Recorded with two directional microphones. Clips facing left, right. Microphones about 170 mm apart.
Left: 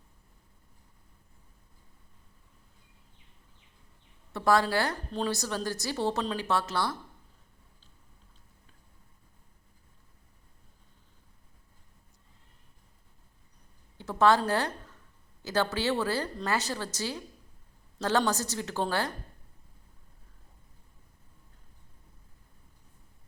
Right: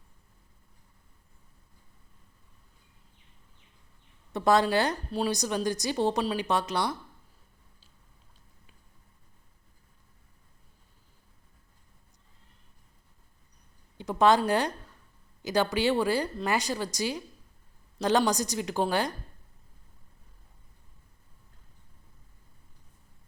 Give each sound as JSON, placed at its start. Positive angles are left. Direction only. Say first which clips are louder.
{"t": 4.3, "sound": "a woman's voice", "louder": "right 2 dB", "side_deg": -20}
{"t": 14.0, "sound": "a woman's voice", "louder": "right 1 dB", "side_deg": -15}